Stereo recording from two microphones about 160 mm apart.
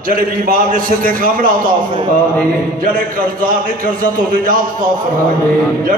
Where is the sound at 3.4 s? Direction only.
60° right (ahead or behind).